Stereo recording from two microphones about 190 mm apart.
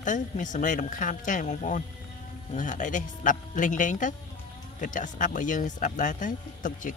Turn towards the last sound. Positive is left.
turn(degrees=45)  # may be behind; listen again after turning